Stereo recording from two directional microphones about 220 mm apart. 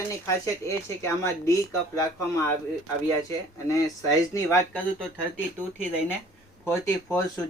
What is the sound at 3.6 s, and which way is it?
Speech, 15° left (ahead or behind).